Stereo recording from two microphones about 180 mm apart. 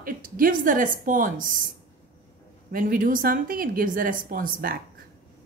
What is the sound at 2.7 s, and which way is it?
A woman's voice, 50° right (ahead or behind).